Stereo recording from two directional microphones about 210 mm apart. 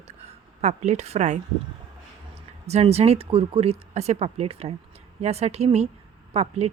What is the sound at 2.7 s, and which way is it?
Speech, 30° right (ahead or behind).